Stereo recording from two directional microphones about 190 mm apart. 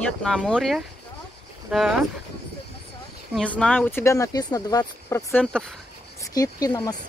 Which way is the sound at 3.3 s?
5° left (ahead or behind).